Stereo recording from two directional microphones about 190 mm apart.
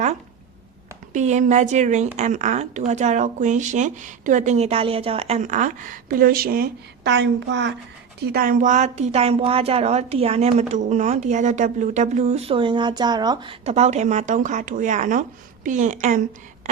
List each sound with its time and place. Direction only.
1.1 s a woman's voice: 40° right (ahead or behind); by 7.8 s 70° right (ahead or behind)
8.3 s a woman's voice: 50° right (ahead or behind)